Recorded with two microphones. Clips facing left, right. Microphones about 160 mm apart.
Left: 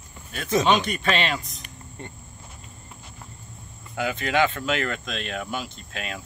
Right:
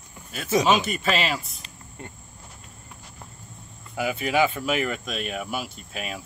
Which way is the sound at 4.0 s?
10° right (ahead or behind).